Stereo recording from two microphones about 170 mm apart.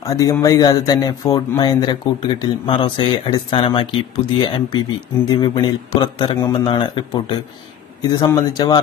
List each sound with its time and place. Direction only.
0.0 s speech: 20° left (ahead or behind)